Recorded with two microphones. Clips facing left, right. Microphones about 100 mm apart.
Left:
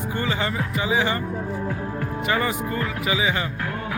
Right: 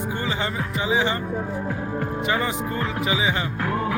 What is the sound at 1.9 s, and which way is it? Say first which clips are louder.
Speech: right 1 dB; 25° right (ahead or behind).